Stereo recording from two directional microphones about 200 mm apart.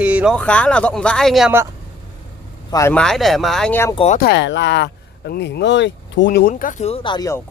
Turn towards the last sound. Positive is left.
turn(degrees=20)  # may be behind; listen again after turning